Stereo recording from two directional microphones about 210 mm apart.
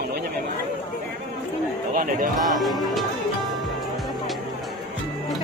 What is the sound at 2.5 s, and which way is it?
Speech, centre (ahead or behind).